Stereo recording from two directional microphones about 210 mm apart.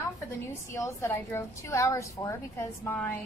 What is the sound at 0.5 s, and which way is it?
A woman's voice, 15° left (ahead or behind).